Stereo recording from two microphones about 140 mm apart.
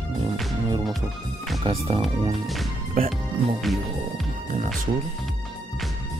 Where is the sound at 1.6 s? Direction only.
40° right (ahead or behind).